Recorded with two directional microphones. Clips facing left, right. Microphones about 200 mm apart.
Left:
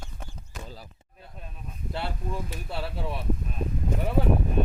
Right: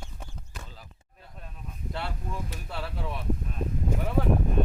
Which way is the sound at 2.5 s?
10° left (ahead or behind).